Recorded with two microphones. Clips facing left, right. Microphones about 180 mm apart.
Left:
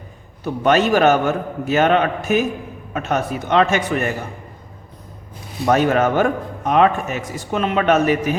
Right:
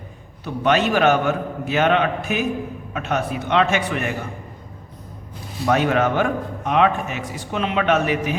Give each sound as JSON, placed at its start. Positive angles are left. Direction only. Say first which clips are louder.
{"t": 0.4, "sound": "a man's voice", "louder": "left 3 dB", "side_deg": 45}
{"t": 5.6, "sound": "a man's voice", "louder": "left 3 dB", "side_deg": 45}